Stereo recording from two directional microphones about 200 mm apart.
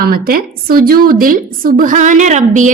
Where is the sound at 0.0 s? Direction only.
45° right (ahead or behind).